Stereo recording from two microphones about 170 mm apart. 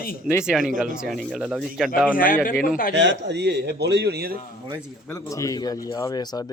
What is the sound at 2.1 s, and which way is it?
Speech, 55° left (ahead or behind).